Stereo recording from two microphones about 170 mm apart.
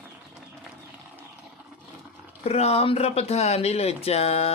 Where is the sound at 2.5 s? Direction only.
35° left (ahead or behind).